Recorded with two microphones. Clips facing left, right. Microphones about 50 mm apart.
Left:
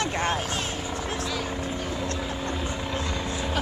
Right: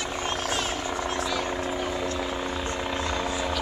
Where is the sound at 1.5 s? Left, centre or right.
Centre.